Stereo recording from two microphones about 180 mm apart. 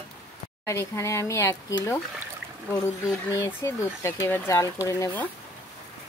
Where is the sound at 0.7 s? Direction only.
15° left (ahead or behind).